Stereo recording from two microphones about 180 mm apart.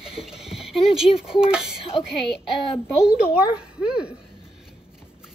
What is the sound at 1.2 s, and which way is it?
Speech, 5° right (ahead or behind).